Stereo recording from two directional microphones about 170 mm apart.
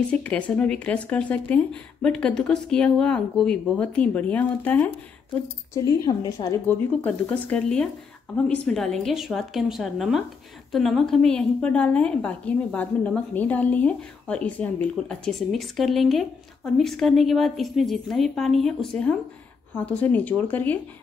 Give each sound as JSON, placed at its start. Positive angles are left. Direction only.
{"t": 0.1, "sound": "a woman's voice", "side_deg": 5}
{"t": 5.9, "sound": "a woman's voice", "side_deg": 20}
{"t": 7.0, "sound": "a woman's voice", "side_deg": 10}